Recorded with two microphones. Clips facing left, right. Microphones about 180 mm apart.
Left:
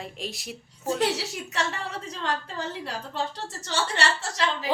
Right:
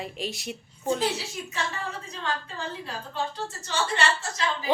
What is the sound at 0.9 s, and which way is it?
A woman's voice, 80° left.